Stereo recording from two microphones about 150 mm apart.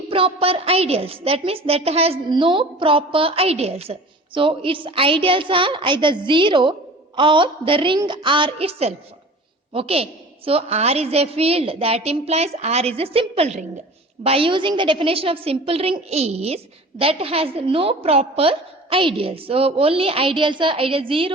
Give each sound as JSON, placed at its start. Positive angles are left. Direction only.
{"t": 0.1, "sound": "a woman's voice", "side_deg": -35}